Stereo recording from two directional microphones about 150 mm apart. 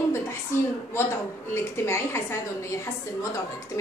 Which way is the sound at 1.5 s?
15° left (ahead or behind).